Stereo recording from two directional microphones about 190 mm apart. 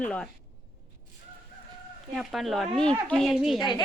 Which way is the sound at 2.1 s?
Centre (ahead or behind).